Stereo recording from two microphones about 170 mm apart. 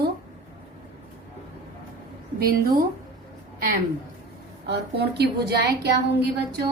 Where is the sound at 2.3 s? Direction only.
60° right (ahead or behind).